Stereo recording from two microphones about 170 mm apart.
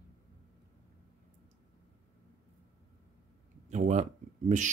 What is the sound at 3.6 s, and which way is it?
Speech, 45° right (ahead or behind).